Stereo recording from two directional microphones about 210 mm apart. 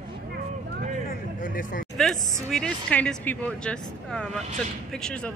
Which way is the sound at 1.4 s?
40° left (ahead or behind).